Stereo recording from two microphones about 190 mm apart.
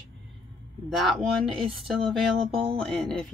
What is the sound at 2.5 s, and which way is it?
Music, 30° right (ahead or behind).